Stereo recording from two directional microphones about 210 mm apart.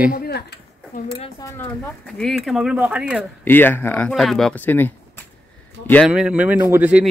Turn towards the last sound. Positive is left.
turn(degrees=-5)  # may be behind; listen again after turning